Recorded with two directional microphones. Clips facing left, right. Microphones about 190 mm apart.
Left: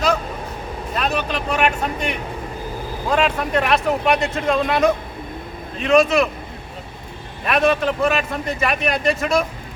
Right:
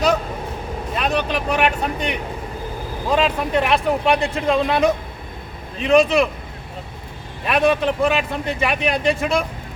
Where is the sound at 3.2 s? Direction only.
Centre (ahead or behind).